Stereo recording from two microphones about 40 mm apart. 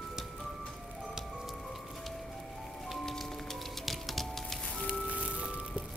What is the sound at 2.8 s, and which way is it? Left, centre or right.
Music, centre.